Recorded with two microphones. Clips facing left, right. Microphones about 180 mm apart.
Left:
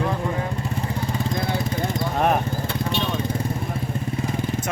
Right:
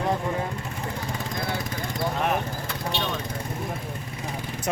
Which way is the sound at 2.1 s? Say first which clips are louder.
Left 6 dB; 45° left (ahead or behind).